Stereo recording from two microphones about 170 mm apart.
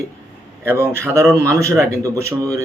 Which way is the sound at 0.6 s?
15° right (ahead or behind).